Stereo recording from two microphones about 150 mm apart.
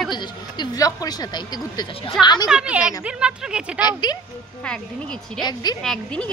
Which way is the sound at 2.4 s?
5° right (ahead or behind).